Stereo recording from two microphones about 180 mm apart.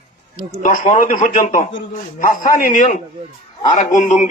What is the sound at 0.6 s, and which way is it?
A man's voice, 50° left (ahead or behind).